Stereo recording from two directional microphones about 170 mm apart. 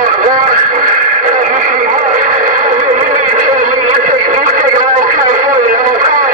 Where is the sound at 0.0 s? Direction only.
50° right (ahead or behind).